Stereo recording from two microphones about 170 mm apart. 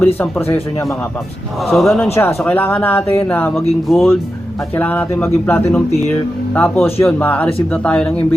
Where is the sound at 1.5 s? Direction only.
Centre (ahead or behind).